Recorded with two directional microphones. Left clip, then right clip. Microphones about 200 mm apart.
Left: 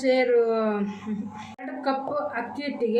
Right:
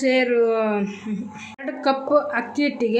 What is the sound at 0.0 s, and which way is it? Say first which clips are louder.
A woman's voice: right 2 dB; 50° right (ahead or behind).